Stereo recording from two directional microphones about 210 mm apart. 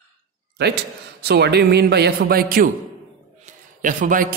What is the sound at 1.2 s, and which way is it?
Speech, 50° right (ahead or behind).